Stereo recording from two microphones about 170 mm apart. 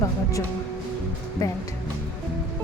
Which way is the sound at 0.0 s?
20° left (ahead or behind).